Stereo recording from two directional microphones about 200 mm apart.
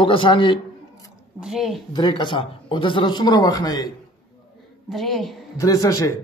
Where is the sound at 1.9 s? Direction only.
20° left (ahead or behind).